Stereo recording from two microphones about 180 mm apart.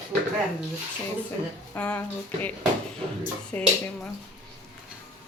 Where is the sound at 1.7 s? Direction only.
10° left (ahead or behind).